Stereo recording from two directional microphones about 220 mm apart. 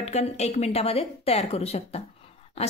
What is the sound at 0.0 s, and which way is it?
A woman's voice, 30° left (ahead or behind).